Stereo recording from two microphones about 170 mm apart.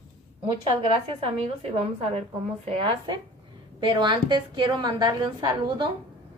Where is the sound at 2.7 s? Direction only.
30° right (ahead or behind).